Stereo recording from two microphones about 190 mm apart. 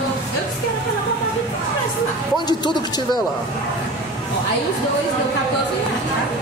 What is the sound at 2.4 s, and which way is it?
Speech, 20° left (ahead or behind).